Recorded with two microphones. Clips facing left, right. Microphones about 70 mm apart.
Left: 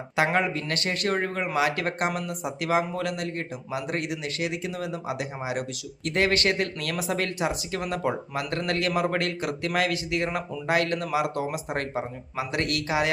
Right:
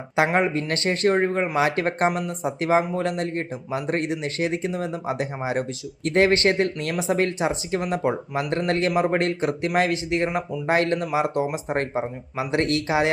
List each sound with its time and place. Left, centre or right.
0.3 s speech: right
10.2 s speech: centre
10.7 s speech: right